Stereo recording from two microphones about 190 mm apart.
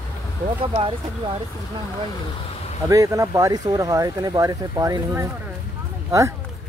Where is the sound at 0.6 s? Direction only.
30° right (ahead or behind).